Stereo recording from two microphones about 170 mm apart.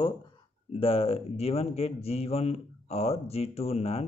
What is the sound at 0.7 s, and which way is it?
Speech, 35° left (ahead or behind).